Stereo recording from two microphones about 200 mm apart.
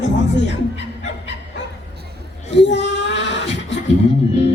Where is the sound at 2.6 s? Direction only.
60° left (ahead or behind).